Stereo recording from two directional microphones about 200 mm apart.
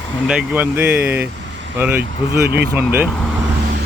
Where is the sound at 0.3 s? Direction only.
5° right (ahead or behind).